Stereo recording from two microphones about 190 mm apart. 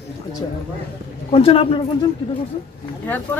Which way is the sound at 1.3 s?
30° left (ahead or behind).